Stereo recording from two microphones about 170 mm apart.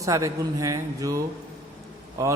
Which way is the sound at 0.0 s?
20° right (ahead or behind).